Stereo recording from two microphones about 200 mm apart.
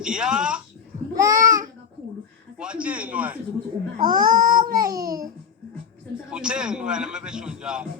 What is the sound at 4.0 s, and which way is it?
Speech, 20° right (ahead or behind).